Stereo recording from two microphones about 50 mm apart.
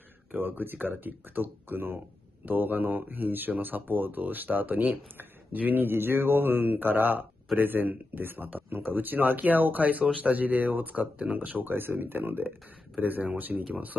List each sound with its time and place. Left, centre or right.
0.4 s speech: right